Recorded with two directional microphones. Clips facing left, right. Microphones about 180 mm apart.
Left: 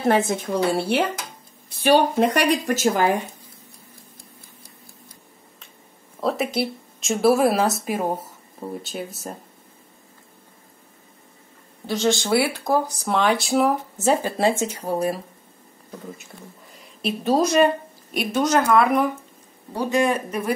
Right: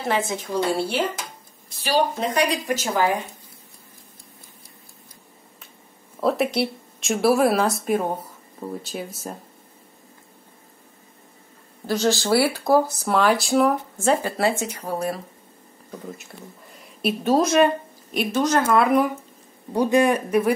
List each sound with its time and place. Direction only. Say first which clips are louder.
0.0 s a woman's voice: left 5 dB; 50° left (ahead or behind)
6.2 s speech: right 2 dB; centre (ahead or behind)
11.8 s speech: even; centre (ahead or behind)
14.2 s speech: left 2 dB; 25° left (ahead or behind)
17.0 s speech: right 1 dB; centre (ahead or behind)
19.7 s speech: right 3 dB; 15° right (ahead or behind)